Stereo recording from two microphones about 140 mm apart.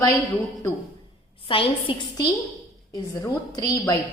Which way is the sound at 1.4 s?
40° left (ahead or behind).